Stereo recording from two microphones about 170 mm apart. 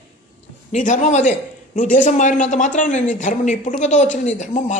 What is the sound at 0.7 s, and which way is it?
A man's voice, 45° left (ahead or behind).